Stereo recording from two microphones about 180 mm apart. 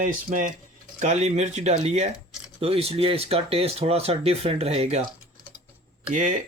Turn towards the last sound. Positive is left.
turn(degrees=-45)  # may be behind; listen again after turning